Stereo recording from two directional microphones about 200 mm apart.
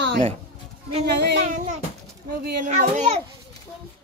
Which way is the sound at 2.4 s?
40° right (ahead or behind).